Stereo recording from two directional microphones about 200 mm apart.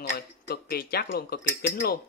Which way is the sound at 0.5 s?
50° left (ahead or behind).